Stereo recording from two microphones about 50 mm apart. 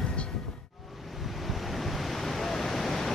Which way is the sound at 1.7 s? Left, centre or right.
Centre.